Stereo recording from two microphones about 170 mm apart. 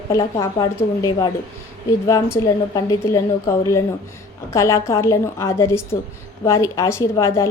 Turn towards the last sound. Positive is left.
turn(degrees=15)  # may be behind; listen again after turning